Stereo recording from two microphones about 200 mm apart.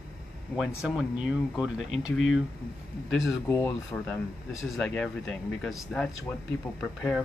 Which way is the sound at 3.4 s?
10° left (ahead or behind).